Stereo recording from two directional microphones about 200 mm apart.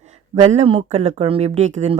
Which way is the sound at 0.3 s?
30° right (ahead or behind).